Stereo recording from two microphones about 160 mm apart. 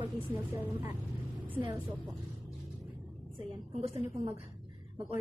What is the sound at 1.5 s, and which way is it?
Speech, 10° right (ahead or behind).